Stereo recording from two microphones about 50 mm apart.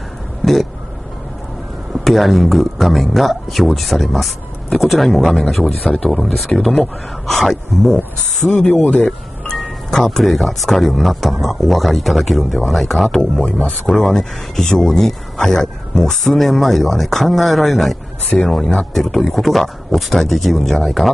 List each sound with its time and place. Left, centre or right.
2.0 s speech: centre
8.5 s speech: left
8.8 s music: left
9.9 s speech: centre
13.2 s speech: left
13.9 s speech: centre